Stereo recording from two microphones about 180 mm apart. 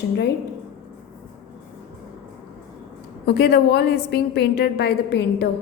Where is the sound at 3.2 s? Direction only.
65° left (ahead or behind).